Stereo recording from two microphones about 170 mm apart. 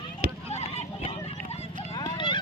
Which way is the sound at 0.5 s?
40° left (ahead or behind).